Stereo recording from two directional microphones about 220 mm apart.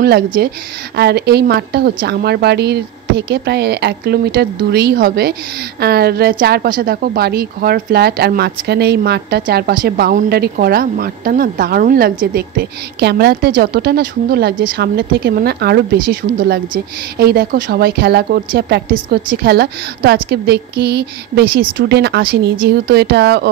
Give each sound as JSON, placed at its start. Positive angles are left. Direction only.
{"t": 0.0, "sound": "speech", "side_deg": -45}